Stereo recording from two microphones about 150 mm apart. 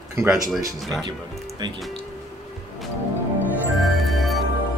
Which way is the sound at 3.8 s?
Centre (ahead or behind).